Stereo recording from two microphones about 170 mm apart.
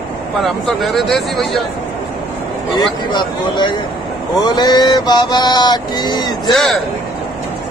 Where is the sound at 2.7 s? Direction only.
25° left (ahead or behind).